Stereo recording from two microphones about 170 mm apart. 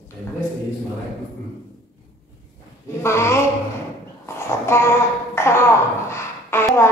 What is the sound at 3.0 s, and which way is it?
Speech, 15° left (ahead or behind).